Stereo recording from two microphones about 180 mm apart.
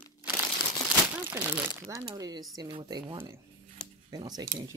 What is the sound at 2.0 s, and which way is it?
Speech, 20° right (ahead or behind).